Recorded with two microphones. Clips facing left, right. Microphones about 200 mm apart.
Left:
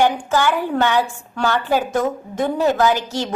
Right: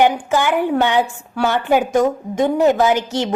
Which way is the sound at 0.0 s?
15° right (ahead or behind).